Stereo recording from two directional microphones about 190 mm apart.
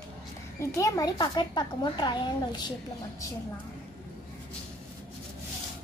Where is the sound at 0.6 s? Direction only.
15° left (ahead or behind).